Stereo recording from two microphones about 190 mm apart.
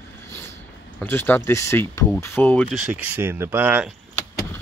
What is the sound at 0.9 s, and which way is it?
Speech, 10° left (ahead or behind).